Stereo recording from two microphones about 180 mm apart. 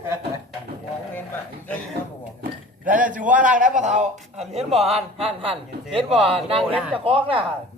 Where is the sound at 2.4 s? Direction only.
50° right (ahead or behind); by 7.4 s 30° right (ahead or behind).